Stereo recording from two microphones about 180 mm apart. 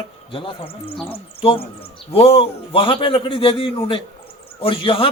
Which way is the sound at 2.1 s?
35° left (ahead or behind).